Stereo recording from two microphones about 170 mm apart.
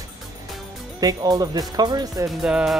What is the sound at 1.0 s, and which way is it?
Speech, 20° right (ahead or behind).